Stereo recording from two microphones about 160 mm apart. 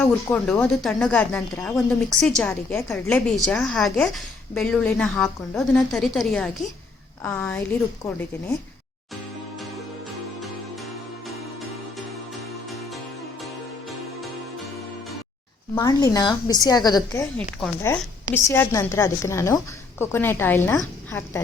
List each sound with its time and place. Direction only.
0.3 s a woman's voice: 15° left (ahead or behind)
0.7 s a woman's voice: centre (ahead or behind)
2.5 s a woman's voice: 15° left (ahead or behind)
2.9 s a woman's voice: 5° left (ahead or behind)
15.8 s a woman's voice: 25° left (ahead or behind)
17.3 s a woman's voice: 10° left (ahead or behind)